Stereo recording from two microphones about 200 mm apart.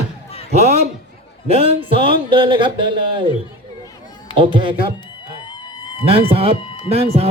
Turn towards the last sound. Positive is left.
turn(degrees=-30)  # may be behind; listen again after turning